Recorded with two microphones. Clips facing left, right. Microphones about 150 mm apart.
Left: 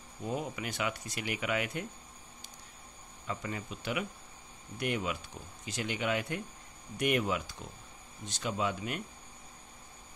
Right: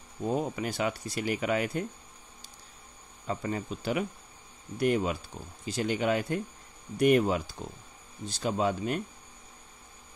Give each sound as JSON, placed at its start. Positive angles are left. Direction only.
{"t": 0.2, "sound": "speech", "side_deg": -35}
{"t": 3.3, "sound": "speech", "side_deg": -35}